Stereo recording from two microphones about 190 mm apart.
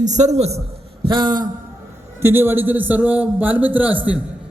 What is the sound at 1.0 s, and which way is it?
Speech, 25° right (ahead or behind).